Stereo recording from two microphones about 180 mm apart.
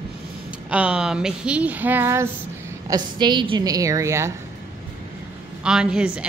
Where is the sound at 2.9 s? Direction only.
25° right (ahead or behind).